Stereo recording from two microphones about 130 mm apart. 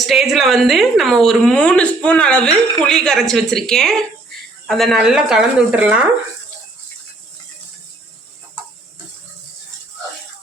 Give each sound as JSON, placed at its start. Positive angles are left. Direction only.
{"t": 0.0, "sound": "a woman's voice", "side_deg": 0}